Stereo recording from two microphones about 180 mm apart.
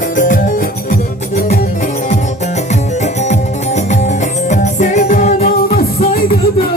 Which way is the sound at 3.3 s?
40° left (ahead or behind).